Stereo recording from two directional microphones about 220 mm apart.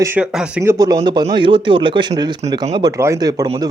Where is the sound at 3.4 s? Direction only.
25° right (ahead or behind).